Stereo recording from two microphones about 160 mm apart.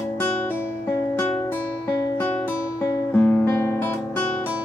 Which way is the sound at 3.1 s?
15° left (ahead or behind).